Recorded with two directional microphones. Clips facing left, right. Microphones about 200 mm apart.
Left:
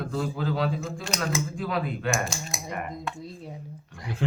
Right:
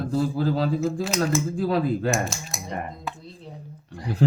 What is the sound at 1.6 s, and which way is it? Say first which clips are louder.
Speech: right 6 dB; 35° right (ahead or behind).